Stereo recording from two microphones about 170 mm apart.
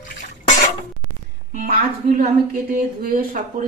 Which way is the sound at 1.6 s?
60° right (ahead or behind).